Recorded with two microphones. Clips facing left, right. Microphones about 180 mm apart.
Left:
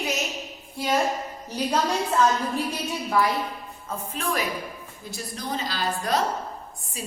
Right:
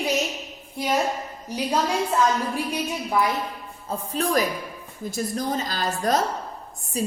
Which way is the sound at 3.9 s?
35° right (ahead or behind).